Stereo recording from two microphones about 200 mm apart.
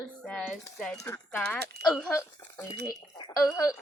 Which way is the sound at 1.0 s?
10° left (ahead or behind).